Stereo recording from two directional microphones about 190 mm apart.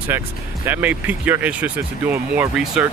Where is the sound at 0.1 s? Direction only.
10° right (ahead or behind).